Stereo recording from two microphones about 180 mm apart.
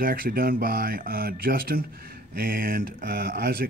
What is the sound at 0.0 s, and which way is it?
Speech, 55° right (ahead or behind).